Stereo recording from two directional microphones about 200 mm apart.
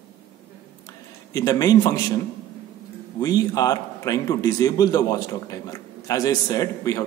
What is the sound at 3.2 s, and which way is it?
A man's voice, 20° left (ahead or behind).